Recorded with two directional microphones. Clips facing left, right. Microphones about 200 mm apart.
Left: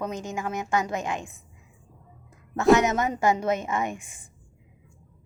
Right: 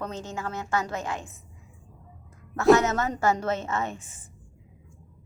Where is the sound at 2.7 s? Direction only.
15° left (ahead or behind).